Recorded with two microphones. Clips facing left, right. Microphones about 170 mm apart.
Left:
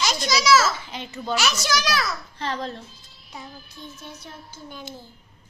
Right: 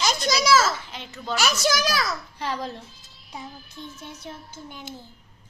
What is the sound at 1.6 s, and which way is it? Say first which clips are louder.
Speech: right 1 dB; 45° right (ahead or behind).